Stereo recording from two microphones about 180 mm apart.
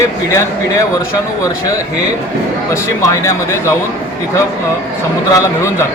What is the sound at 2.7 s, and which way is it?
Speech, 15° left (ahead or behind).